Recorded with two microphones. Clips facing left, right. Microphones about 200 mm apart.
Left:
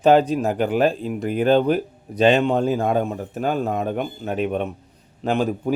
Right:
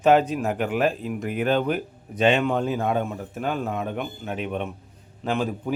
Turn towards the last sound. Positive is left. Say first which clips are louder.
# left 4 dB
turn(degrees=40)  # may be behind; listen again after turning